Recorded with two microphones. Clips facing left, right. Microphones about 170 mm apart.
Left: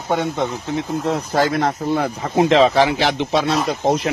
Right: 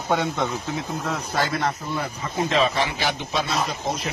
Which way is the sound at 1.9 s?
75° left (ahead or behind).